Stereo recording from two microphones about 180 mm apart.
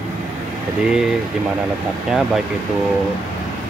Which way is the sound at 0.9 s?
5° right (ahead or behind).